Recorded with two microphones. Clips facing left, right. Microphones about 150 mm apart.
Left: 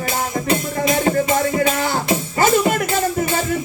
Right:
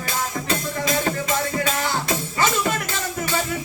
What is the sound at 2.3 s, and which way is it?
Music, 45° left (ahead or behind).